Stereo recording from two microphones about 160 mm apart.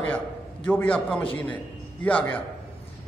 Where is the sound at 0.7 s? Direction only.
10° left (ahead or behind).